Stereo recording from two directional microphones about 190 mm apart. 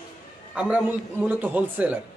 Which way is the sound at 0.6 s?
5° right (ahead or behind).